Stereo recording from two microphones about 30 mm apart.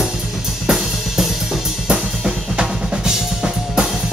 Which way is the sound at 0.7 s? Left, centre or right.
Centre.